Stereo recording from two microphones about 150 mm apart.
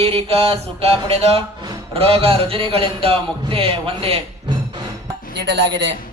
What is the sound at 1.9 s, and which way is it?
Speech, 40° right (ahead or behind).